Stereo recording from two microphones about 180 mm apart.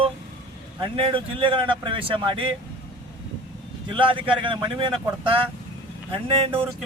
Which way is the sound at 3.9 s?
30° right (ahead or behind).